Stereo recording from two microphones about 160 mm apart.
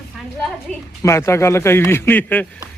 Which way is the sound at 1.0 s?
15° left (ahead or behind).